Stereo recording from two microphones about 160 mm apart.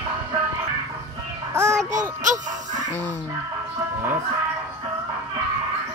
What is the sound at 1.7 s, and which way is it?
Music, 50° right (ahead or behind).